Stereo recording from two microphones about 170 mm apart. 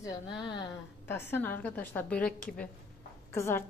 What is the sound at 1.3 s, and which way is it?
A woman's voice, 10° left (ahead or behind).